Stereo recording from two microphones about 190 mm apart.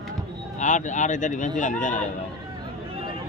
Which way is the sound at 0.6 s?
40° left (ahead or behind).